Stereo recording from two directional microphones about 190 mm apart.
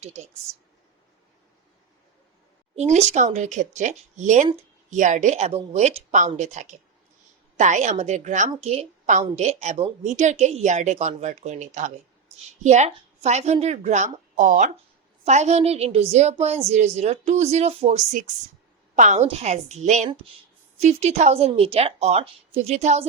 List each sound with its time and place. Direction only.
0.0 s a woman's voice: 35° right (ahead or behind)
2.7 s a woman's voice: 35° right (ahead or behind)